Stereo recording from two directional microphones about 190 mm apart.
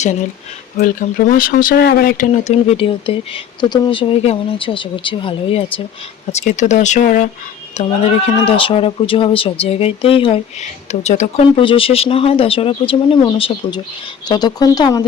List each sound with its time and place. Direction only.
1.3 s speech: 45° left (ahead or behind)
2.4 s speech: 35° left (ahead or behind)
7.8 s speech: 30° left (ahead or behind)